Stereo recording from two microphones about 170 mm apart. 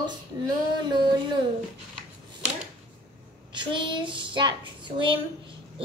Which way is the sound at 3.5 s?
30° right (ahead or behind).